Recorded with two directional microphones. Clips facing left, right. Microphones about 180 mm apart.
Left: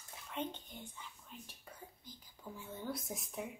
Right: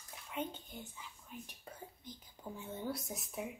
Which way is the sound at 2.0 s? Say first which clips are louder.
Right 3 dB; 20° right (ahead or behind).